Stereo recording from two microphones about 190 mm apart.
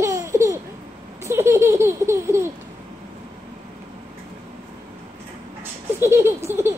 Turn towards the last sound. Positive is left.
turn(degrees=-15)  # may be behind; listen again after turning